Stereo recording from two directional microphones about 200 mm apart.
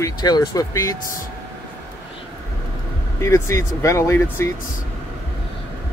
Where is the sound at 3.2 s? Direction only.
15° left (ahead or behind).